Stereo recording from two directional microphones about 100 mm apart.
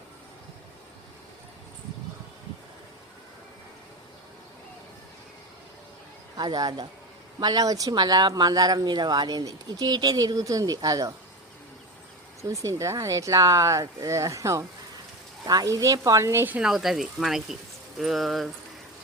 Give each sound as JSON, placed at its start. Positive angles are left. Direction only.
{"t": 6.3, "sound": "speech", "side_deg": -40}
{"t": 12.4, "sound": "speech", "side_deg": -30}
{"t": 16.6, "sound": "speech", "side_deg": -5}